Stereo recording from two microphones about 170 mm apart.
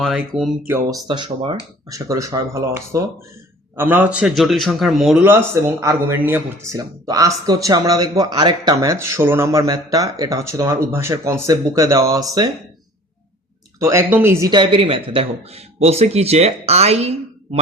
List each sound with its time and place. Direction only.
0.0 s a man's voice: centre (ahead or behind)
1.0 s a man's voice: 30° right (ahead or behind); by 5.1 s centre (ahead or behind)
5.2 s a man's voice: 15° right (ahead or behind)
13.7 s speech: 20° right (ahead or behind); by 17.6 s 40° right (ahead or behind)